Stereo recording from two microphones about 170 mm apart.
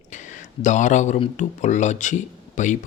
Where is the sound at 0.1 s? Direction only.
45° left (ahead or behind).